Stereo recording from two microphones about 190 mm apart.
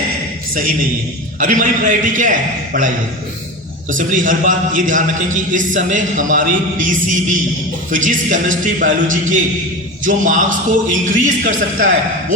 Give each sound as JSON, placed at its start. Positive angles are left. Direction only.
{"t": 0.5, "sound": "a man's voice", "side_deg": -45}
{"t": 3.8, "sound": "a man's voice", "side_deg": -45}